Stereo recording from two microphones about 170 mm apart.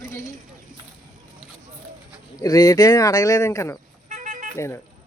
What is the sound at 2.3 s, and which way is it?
Speech, 20° left (ahead or behind).